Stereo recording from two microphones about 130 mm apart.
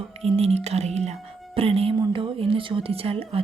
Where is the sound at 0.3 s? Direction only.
50° right (ahead or behind).